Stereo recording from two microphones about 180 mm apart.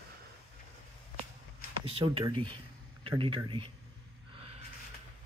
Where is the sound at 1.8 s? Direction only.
30° right (ahead or behind).